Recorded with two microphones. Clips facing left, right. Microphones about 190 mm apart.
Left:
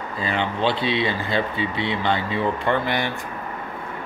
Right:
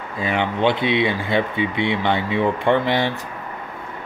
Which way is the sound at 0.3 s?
15° right (ahead or behind).